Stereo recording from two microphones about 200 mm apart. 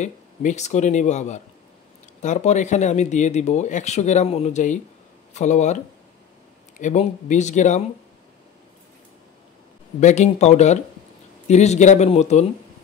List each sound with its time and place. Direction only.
0.0 s speech: 35° left (ahead or behind)
6.8 s speech: 35° left (ahead or behind)
9.9 s speech: 35° left (ahead or behind)